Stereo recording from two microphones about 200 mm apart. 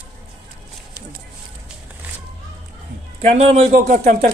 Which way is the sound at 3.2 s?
35° right (ahead or behind).